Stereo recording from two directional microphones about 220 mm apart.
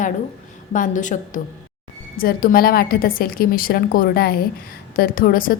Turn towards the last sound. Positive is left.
turn(degrees=40)  # may be behind; listen again after turning